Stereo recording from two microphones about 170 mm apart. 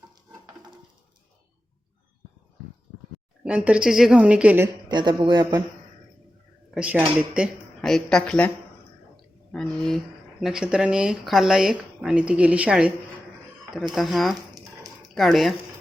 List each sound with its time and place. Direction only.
3.4 s a woman's voice: 5° right (ahead or behind)
4.9 s speech: 25° right (ahead or behind)
6.7 s speech: 5° right (ahead or behind)
9.1 s a sound: 5° left (ahead or behind)
10.4 s speech: 5° right (ahead or behind)
13.9 s speech: centre (ahead or behind)